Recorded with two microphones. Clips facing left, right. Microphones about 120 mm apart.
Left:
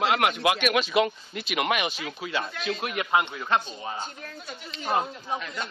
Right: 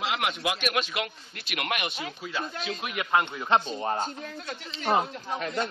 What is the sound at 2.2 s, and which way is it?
Speech, 75° left (ahead or behind).